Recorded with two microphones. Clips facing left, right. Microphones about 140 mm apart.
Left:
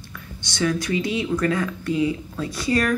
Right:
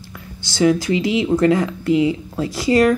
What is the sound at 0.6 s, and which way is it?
Speech, 20° right (ahead or behind).